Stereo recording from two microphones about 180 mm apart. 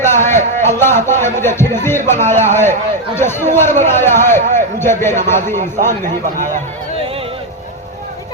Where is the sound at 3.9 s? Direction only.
15° left (ahead or behind).